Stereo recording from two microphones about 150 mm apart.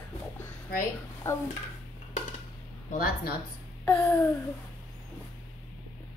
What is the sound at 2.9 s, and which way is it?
Speech, 80° left.